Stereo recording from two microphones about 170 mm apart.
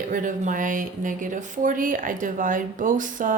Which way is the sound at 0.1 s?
50° right (ahead or behind).